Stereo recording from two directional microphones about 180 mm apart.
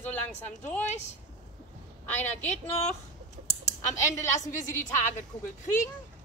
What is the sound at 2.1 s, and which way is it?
Speech, 10° left (ahead or behind).